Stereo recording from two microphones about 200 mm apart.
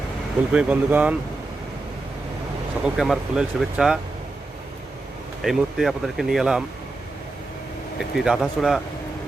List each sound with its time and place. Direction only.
0.5 s speech: 5° right (ahead or behind)
2.8 s speech: centre (ahead or behind)
5.4 s speech: centre (ahead or behind)
8.1 s speech: centre (ahead or behind)